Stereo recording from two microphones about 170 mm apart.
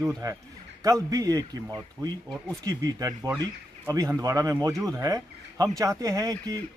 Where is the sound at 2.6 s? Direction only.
20° right (ahead or behind).